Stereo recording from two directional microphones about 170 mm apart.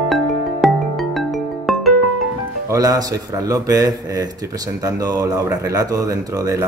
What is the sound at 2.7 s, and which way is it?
A man's voice, 20° right (ahead or behind).